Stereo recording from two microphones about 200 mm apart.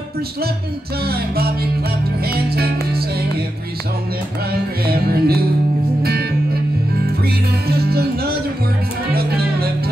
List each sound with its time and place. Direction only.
1.0 s music: 50° right (ahead or behind)
4.5 s music: 50° right (ahead or behind)